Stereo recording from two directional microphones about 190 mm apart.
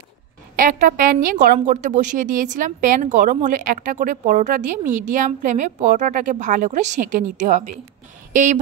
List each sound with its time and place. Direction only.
0.6 s a woman's voice: 45° right (ahead or behind)